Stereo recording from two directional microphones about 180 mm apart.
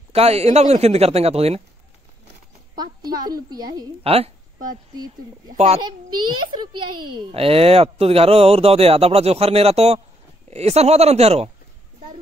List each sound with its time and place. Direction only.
0.1 s speech: 35° right (ahead or behind)
3.3 s a woman's voice: 20° right (ahead or behind)
4.0 s speech: 35° right (ahead or behind)
5.5 s speech: 40° right (ahead or behind)
5.8 s a woman's voice: 25° right (ahead or behind)
7.2 s speech: 30° right (ahead or behind)